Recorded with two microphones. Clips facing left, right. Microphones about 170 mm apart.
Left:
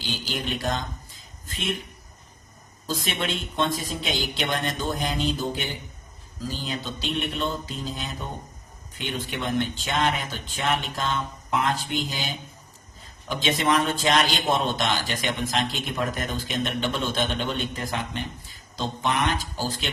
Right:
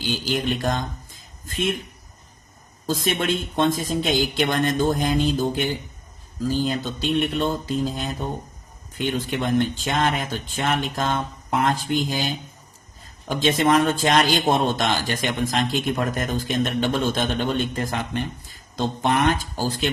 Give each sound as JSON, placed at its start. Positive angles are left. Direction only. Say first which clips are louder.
{"t": 0.3, "sound": "a man's voice", "louder": "right 3 dB", "side_deg": -50}
{"t": 2.8, "sound": "a man's voice", "louder": "right 5 dB", "side_deg": -45}